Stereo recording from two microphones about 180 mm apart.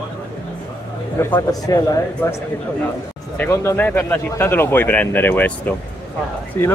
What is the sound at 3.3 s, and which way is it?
Speech, 10° left (ahead or behind).